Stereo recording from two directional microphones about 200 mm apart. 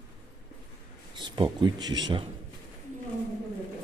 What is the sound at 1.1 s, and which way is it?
Speech, 20° right (ahead or behind).